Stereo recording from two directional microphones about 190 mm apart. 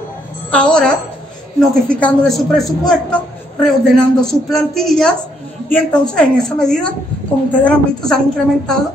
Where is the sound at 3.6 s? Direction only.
5° left (ahead or behind).